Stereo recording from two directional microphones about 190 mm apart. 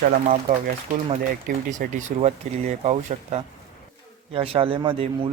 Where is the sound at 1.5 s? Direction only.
45° right (ahead or behind).